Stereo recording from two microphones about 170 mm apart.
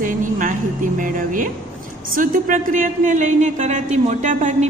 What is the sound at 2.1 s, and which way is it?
A woman's voice, 55° right (ahead or behind).